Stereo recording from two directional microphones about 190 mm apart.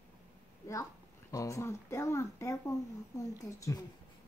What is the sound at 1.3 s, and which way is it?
Speech, 15° left (ahead or behind).